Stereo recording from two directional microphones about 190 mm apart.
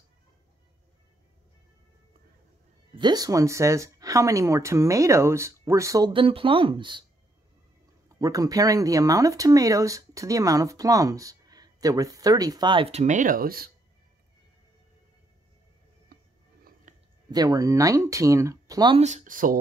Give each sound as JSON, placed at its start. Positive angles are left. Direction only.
{"t": 2.9, "sound": "speech", "side_deg": -25}
{"t": 8.1, "sound": "speech", "side_deg": -20}
{"t": 16.9, "sound": "a sound", "side_deg": -40}
{"t": 17.3, "sound": "speech", "side_deg": -20}
{"t": 18.9, "sound": "speech", "side_deg": -40}